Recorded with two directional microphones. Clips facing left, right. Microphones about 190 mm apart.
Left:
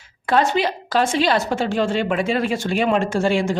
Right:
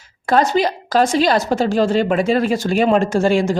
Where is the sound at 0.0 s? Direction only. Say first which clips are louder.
Right 3 dB; 40° right (ahead or behind).